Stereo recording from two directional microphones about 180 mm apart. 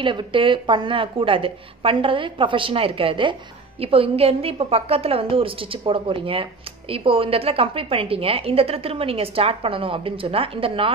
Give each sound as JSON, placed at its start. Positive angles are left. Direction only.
{"t": 0.0, "sound": "a woman's voice", "side_deg": -25}